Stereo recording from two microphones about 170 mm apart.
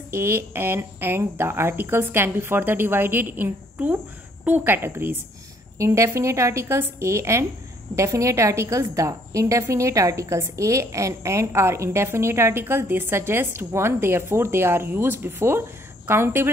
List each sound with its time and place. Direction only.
0.1 s a woman's voice: 15° right (ahead or behind)